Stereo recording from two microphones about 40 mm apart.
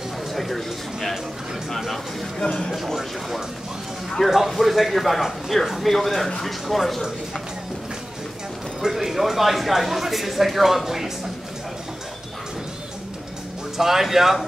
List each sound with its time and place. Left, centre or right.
0.3 s speech: centre
2.4 s speech: left
2.7 s speech: centre
4.5 s speech: centre
8.8 s speech: centre
13.7 s speech: centre